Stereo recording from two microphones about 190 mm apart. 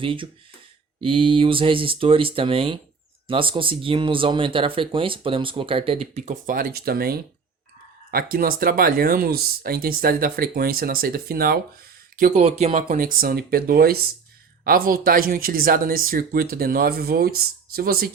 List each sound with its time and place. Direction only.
0.0 s speech: 25° right (ahead or behind); by 11.6 s 50° right (ahead or behind)
12.1 s speech: 40° right (ahead or behind)